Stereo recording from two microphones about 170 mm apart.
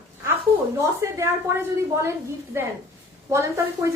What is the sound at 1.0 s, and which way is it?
A woman's voice, 20° right (ahead or behind).